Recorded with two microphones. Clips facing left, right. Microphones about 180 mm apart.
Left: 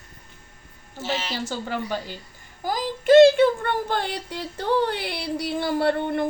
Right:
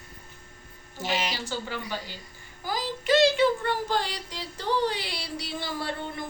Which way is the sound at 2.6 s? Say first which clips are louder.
Left 4 dB; 45° left (ahead or behind).